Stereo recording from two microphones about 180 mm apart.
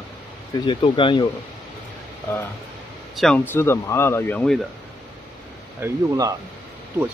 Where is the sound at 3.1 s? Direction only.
5° left (ahead or behind).